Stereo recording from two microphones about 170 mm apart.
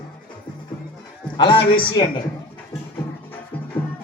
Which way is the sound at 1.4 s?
30° left (ahead or behind).